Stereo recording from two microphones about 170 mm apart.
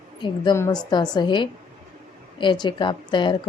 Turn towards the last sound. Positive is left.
turn(degrees=30)  # may be behind; listen again after turning